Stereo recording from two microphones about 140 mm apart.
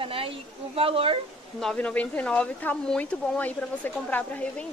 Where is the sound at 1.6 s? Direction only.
10° left (ahead or behind).